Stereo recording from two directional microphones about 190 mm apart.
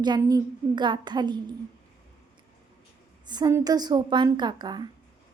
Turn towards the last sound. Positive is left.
turn(degrees=-20)  # may be behind; listen again after turning